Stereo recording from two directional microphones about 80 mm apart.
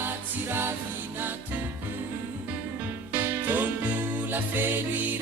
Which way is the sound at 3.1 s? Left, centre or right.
Right.